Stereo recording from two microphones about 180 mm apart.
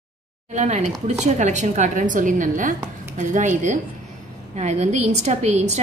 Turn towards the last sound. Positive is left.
turn(degrees=-40)  # may be behind; listen again after turning